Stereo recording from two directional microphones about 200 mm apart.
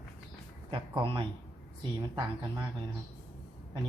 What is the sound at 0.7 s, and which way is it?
Speech, 25° right (ahead or behind).